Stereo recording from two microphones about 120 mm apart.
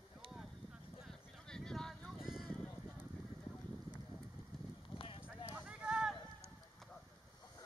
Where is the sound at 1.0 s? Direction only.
5° left (ahead or behind).